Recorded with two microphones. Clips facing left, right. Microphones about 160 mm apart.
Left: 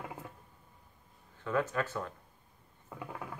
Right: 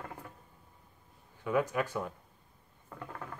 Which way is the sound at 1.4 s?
10° right (ahead or behind).